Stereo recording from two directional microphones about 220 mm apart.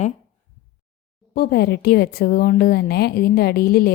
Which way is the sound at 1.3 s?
50° left (ahead or behind).